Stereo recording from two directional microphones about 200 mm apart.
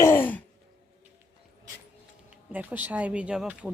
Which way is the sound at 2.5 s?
10° right (ahead or behind).